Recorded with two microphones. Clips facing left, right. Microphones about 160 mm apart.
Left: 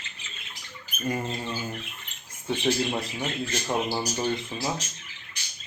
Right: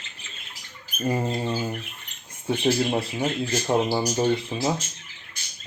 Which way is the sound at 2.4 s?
30° right (ahead or behind).